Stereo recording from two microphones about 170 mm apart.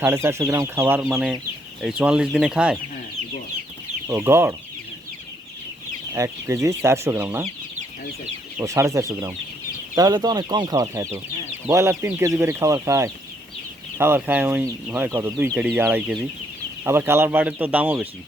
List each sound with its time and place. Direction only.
0.0 s speech: 15° right (ahead or behind)
1.1 s speech: 5° right (ahead or behind)
4.0 s speech: 15° right (ahead or behind)
6.1 s speech: 15° right (ahead or behind)
8.5 s speech: 15° right (ahead or behind)